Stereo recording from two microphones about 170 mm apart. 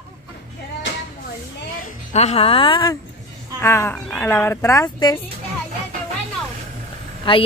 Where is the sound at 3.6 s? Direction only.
15° left (ahead or behind).